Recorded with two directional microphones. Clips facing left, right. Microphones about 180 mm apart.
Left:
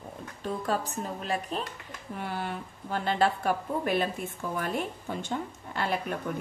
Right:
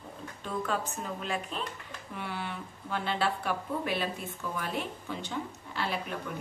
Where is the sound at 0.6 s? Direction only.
35° left (ahead or behind).